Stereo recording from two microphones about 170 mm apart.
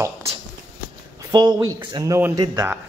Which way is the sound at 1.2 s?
25° right (ahead or behind).